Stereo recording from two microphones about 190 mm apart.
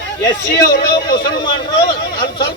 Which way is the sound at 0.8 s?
20° left (ahead or behind).